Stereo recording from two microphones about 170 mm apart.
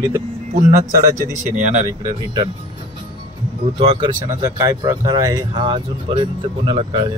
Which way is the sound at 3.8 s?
35° right (ahead or behind).